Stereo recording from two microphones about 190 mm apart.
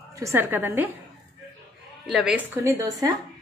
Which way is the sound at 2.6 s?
15° right (ahead or behind).